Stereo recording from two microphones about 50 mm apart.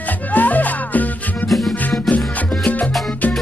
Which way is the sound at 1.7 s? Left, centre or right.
Left.